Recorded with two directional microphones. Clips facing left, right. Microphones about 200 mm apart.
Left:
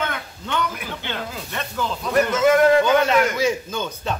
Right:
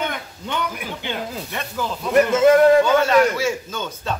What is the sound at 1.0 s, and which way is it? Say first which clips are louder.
Speech: right 4 dB; 15° right (ahead or behind).